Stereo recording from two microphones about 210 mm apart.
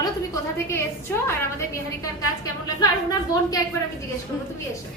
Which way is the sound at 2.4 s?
15° left (ahead or behind).